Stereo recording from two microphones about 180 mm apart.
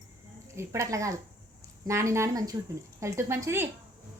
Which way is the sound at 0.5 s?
15° right (ahead or behind).